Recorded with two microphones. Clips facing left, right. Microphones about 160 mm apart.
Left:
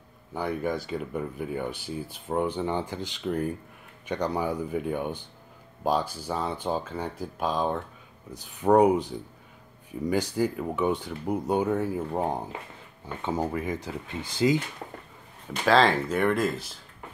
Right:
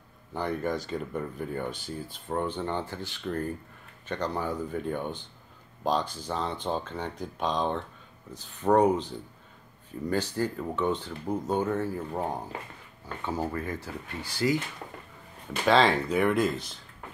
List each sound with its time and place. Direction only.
0.3 s speech: 10° left (ahead or behind)
15.6 s speech: centre (ahead or behind)